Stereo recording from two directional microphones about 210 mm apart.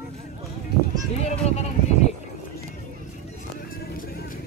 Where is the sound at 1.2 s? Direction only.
30° left (ahead or behind).